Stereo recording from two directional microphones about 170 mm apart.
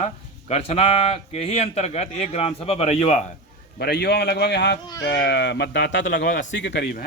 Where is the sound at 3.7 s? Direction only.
70° left (ahead or behind); by 6.2 s 90° left.